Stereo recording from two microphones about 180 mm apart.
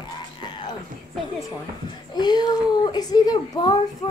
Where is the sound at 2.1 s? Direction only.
25° left (ahead or behind).